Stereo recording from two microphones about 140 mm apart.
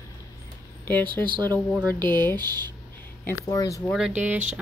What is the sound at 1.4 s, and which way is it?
Speech, 15° left (ahead or behind).